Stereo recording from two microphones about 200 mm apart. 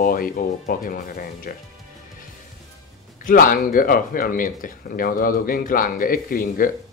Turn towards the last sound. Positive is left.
turn(degrees=45)  # may be behind; listen again after turning